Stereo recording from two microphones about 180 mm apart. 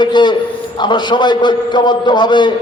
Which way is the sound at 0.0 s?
25° left (ahead or behind).